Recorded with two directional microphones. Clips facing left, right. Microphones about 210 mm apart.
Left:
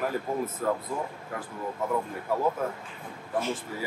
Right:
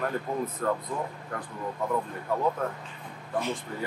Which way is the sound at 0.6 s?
5° left (ahead or behind).